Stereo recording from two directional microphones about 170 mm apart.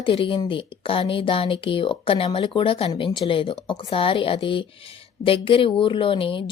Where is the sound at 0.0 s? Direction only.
30° left (ahead or behind).